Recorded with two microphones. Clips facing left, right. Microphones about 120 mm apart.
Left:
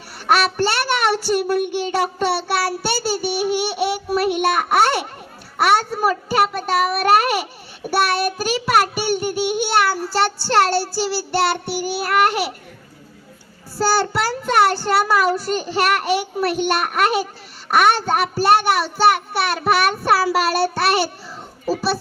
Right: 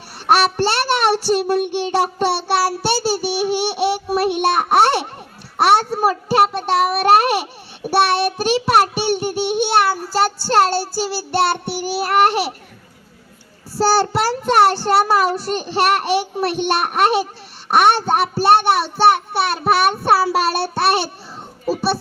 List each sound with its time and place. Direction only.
0.3 s child singing: 35° right (ahead or behind)
3.8 s a child's voice: 35° right (ahead or behind)
7.9 s child singing: 30° right (ahead or behind)
11.9 s child singing: 35° right (ahead or behind)
13.7 s child singing: 30° right (ahead or behind)